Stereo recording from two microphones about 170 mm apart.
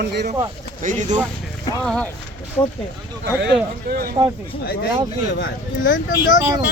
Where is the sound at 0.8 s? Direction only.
50° right (ahead or behind).